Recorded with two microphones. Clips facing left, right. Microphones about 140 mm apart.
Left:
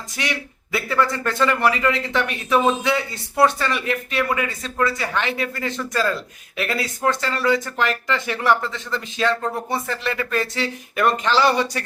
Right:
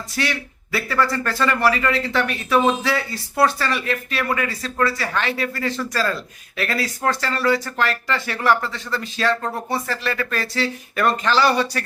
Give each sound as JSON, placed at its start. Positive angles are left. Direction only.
{"t": 0.2, "sound": "a man's voice", "side_deg": 20}